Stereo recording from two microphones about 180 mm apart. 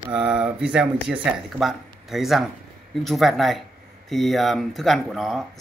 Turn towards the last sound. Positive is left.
turn(degrees=0)  # may be behind; listen again after turning